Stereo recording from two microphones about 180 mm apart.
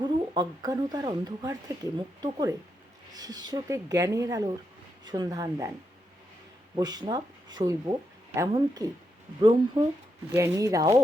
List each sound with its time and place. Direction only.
0.0 s speech: 20° right (ahead or behind)
6.7 s speech: 20° right (ahead or behind)